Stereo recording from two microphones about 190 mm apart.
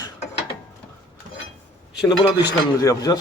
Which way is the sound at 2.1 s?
20° left (ahead or behind).